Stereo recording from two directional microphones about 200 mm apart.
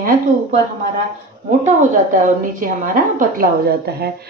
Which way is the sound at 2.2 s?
40° right (ahead or behind).